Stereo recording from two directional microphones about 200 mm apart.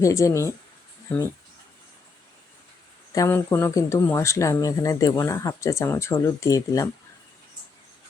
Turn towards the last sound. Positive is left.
turn(degrees=15)  # may be behind; listen again after turning